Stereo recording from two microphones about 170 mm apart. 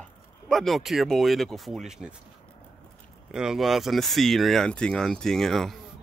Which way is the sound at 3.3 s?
5° right (ahead or behind).